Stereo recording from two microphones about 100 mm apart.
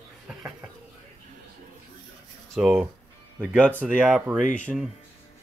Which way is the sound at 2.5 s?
5° right (ahead or behind).